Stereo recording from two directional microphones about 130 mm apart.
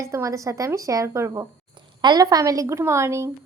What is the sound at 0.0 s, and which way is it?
A woman's voice, 25° right (ahead or behind).